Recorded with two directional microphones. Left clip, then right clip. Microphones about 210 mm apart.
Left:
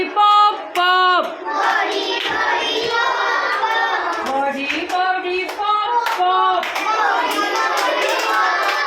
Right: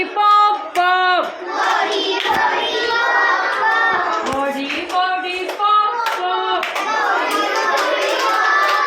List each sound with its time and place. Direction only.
0.2 s music: centre (ahead or behind)